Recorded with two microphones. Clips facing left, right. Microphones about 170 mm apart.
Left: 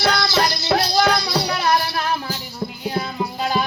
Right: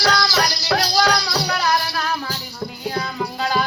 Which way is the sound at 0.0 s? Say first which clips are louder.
Left 1 dB; 25° left (ahead or behind).